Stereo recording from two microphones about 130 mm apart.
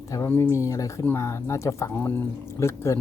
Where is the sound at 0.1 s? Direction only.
25° left (ahead or behind).